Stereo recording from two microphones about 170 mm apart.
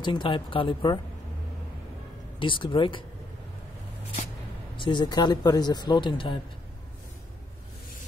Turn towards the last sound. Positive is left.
turn(degrees=30)  # may be behind; listen again after turning